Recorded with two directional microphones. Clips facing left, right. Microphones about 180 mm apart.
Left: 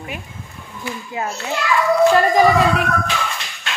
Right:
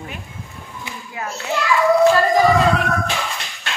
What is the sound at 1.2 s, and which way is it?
Speech, 25° left (ahead or behind).